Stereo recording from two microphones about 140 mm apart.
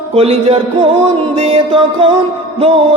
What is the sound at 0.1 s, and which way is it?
Music, 45° right (ahead or behind).